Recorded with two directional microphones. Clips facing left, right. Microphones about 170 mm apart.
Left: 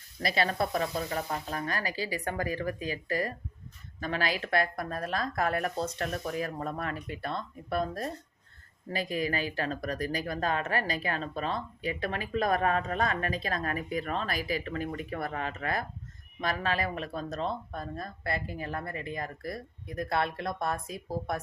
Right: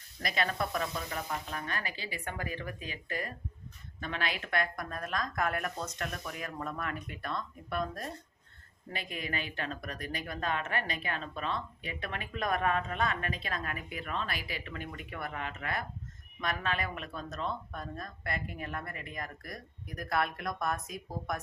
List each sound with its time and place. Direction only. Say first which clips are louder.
0.2 s speech: left 4 dB; 30° left (ahead or behind)